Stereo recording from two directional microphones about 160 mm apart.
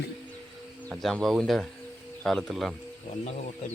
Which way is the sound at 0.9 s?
5° left (ahead or behind).